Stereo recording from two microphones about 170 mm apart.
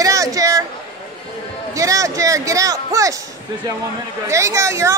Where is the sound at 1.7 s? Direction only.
20° right (ahead or behind).